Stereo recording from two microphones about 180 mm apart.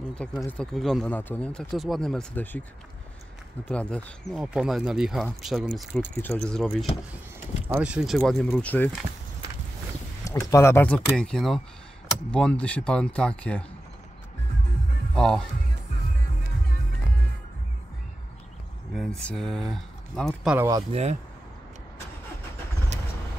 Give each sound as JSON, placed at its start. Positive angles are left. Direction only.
{"t": 0.4, "sound": "speech", "side_deg": 5}
{"t": 3.6, "sound": "speech", "side_deg": 5}
{"t": 10.2, "sound": "speech", "side_deg": 15}
{"t": 15.1, "sound": "speech", "side_deg": 5}
{"t": 18.9, "sound": "speech", "side_deg": 0}
{"t": 20.5, "sound": "speech", "side_deg": -15}
{"t": 20.9, "sound": "speech", "side_deg": -40}